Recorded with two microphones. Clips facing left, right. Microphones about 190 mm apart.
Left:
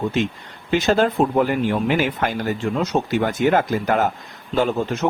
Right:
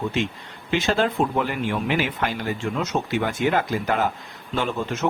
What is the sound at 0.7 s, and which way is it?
Speech, 40° left (ahead or behind).